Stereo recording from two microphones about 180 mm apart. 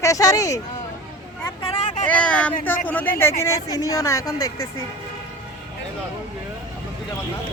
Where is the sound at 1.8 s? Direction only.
40° left (ahead or behind).